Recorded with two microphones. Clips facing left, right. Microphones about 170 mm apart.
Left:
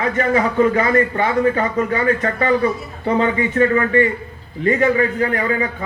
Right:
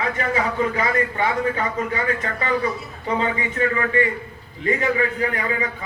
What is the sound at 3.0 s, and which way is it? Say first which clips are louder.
A man's voice: left 6 dB; 45° left (ahead or behind).